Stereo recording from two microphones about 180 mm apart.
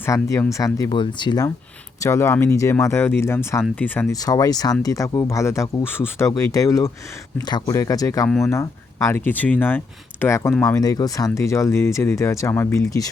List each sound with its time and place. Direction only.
0.0 s speech: 15° left (ahead or behind)
4.1 s speech: 20° left (ahead or behind)
10.8 s speech: 20° left (ahead or behind)